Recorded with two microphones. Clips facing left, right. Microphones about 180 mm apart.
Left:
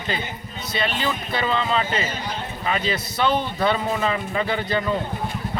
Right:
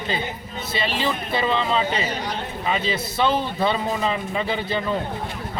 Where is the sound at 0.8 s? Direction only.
Centre (ahead or behind).